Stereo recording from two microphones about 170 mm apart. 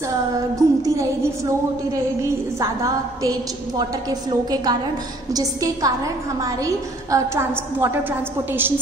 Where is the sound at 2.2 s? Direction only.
20° right (ahead or behind).